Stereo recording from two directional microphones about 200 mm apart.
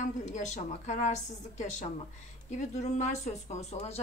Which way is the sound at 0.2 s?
35° left (ahead or behind).